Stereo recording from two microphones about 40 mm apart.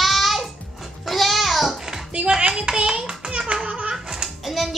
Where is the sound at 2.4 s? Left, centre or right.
Right.